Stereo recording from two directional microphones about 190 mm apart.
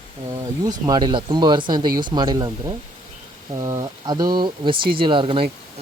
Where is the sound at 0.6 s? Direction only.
20° right (ahead or behind).